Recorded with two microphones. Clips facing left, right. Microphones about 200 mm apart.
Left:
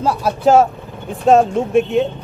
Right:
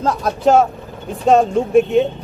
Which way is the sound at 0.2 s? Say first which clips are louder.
Left 1 dB; centre (ahead or behind).